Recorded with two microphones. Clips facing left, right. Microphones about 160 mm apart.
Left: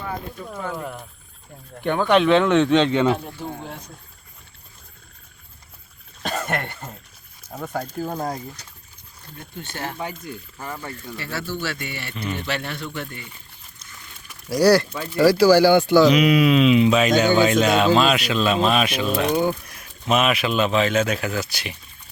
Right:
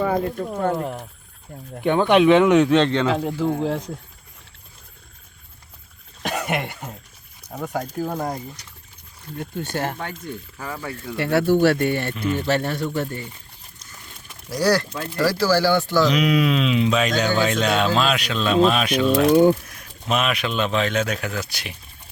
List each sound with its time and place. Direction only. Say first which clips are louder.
1.8 s speech: right 2 dB; 15° right (ahead or behind)
3.1 s speech: right 3 dB; 90° right
6.2 s speech: right 1 dB; 15° right (ahead or behind)
9.4 s speech: right 6 dB; 45° right (ahead or behind)
10.0 s speech: even; 5° left (ahead or behind)
10.7 s speech: right 2 dB; 5° right (ahead or behind)
11.2 s speech: right 13 dB; 60° right (ahead or behind)
12.4 s speech: right 6 dB; 40° right (ahead or behind)
14.5 s speech: left 4 dB; 10° left (ahead or behind)
16.0 s speech: left 3 dB; centre (ahead or behind)